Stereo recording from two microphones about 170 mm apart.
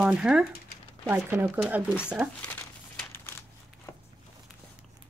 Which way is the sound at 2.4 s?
10° left (ahead or behind).